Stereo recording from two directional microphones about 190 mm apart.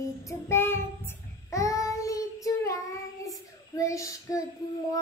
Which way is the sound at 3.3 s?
15° left (ahead or behind).